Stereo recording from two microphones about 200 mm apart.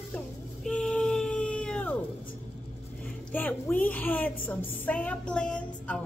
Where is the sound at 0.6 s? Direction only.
5° left (ahead or behind).